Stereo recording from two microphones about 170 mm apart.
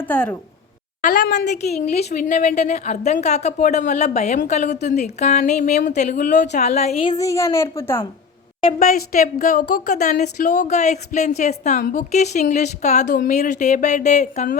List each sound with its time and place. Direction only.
0.1 s a woman's voice: 10° left (ahead or behind)
1.2 s a woman's voice: 90° left
1.7 s speech: 40° left (ahead or behind)
7.2 s a woman's voice: 20° left (ahead or behind)
8.8 s speech: 55° left (ahead or behind)
9.9 s speech: 45° left (ahead or behind)
11.8 s speech: 60° left (ahead or behind)
12.1 s speech: 45° left (ahead or behind)